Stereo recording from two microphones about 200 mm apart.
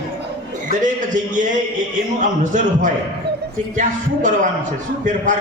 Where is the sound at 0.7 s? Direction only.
40° right (ahead or behind).